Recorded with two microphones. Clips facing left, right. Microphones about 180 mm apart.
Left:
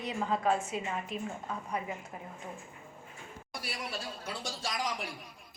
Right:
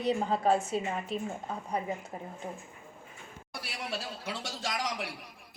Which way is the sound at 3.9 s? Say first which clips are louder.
Right 2 dB; 70° right (ahead or behind).